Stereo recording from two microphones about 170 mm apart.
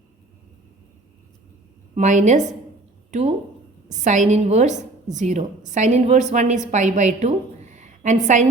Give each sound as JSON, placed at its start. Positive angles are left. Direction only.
{"t": 2.0, "sound": "a woman's voice", "side_deg": -45}